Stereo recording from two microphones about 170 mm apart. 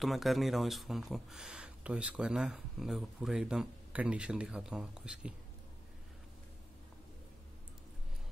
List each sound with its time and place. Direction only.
0.0 s speech: centre (ahead or behind)